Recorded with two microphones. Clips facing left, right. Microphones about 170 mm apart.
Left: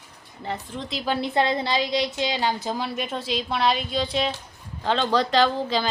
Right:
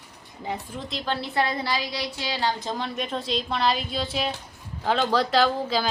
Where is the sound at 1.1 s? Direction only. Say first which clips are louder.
Left 4 dB; 20° left (ahead or behind).